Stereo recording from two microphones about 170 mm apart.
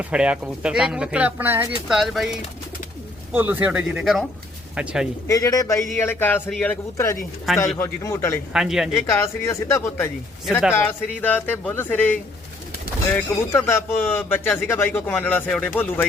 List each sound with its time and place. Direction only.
0.0 s speech: 5° right (ahead or behind)
3.3 s speech: 10° right (ahead or behind)
5.3 s speech: 20° left (ahead or behind)
8.5 s speech: 5° right (ahead or behind)
9.0 s speech: 15° left (ahead or behind)